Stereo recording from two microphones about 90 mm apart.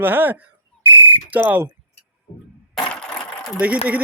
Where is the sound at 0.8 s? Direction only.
20° right (ahead or behind).